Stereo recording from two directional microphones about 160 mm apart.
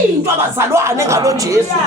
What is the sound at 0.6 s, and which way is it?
Speech, 15° right (ahead or behind).